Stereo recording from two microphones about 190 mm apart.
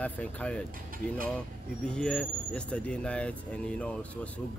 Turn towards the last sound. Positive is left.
turn(degrees=5)  # may be behind; listen again after turning